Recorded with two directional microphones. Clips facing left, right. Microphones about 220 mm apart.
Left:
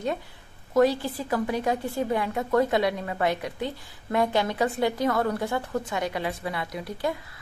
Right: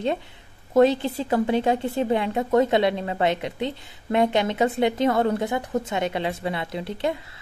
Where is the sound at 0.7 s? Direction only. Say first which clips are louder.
Right 4 dB; 20° right (ahead or behind).